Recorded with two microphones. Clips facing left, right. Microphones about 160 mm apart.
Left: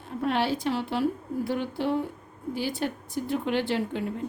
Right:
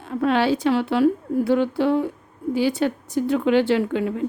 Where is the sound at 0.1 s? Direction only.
90° right.